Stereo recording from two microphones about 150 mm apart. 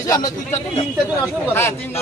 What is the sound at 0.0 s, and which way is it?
Speech, 20° left (ahead or behind).